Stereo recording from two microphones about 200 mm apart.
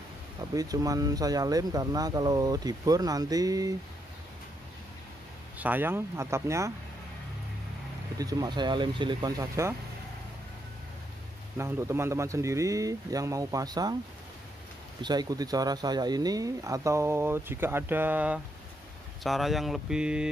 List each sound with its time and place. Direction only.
0.6 s speech: 20° right (ahead or behind)
5.6 s speech: 10° right (ahead or behind)
8.2 s speech: 20° right (ahead or behind)
11.5 s speech: 10° right (ahead or behind)
15.0 s speech: 20° right (ahead or behind); by 20.2 s 5° right (ahead or behind)